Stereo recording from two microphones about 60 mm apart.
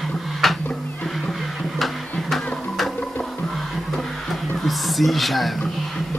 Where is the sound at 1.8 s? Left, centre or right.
Centre.